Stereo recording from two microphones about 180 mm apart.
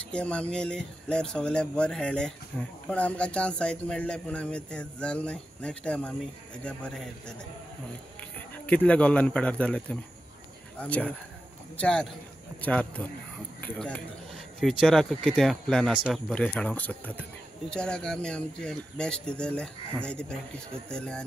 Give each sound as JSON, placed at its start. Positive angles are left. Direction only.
{"t": 0.1, "sound": "speech", "side_deg": 5}
{"t": 8.6, "sound": "a man's voice", "side_deg": 5}